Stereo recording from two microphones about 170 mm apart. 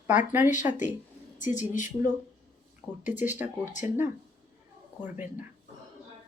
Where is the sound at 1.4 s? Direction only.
45° left (ahead or behind).